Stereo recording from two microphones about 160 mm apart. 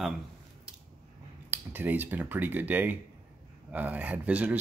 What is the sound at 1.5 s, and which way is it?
Speech, 10° right (ahead or behind).